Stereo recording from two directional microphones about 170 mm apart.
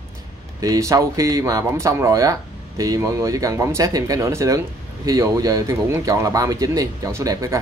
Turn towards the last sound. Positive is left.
turn(degrees=-15)  # may be behind; listen again after turning